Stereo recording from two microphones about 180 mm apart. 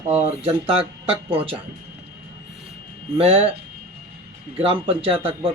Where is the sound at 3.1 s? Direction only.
30° right (ahead or behind).